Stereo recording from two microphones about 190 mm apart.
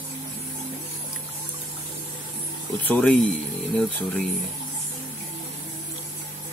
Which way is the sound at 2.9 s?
5° left (ahead or behind).